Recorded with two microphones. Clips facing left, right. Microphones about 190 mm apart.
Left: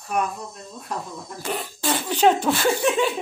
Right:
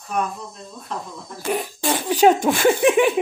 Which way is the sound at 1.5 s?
20° right (ahead or behind).